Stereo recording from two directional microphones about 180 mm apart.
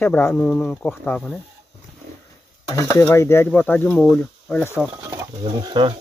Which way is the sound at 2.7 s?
15° left (ahead or behind).